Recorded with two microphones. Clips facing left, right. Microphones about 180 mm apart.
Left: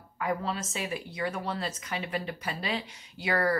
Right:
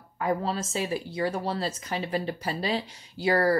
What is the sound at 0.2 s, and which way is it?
Speech, 35° right (ahead or behind).